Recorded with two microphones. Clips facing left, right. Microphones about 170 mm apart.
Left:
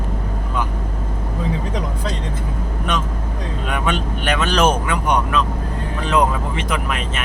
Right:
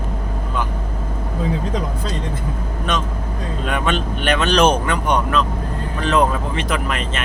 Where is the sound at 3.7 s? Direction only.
10° left (ahead or behind).